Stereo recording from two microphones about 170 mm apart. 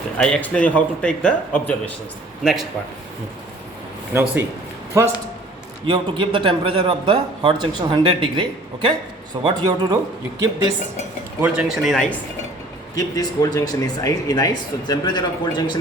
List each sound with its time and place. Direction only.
0.2 s a man's voice: 5° left (ahead or behind)
4.1 s speech: 15° right (ahead or behind)
5.8 s speech: 30° right (ahead or behind)
11.3 s speech: 5° right (ahead or behind)
13.0 s speech: 20° left (ahead or behind)